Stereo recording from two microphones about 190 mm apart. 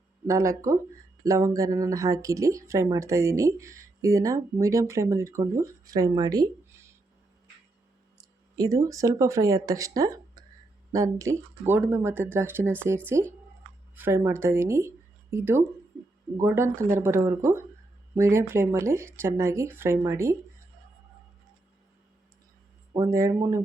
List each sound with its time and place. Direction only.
0.3 s speech: 15° right (ahead or behind)
8.5 s speech: 20° right (ahead or behind)
23.0 s speech: 15° right (ahead or behind)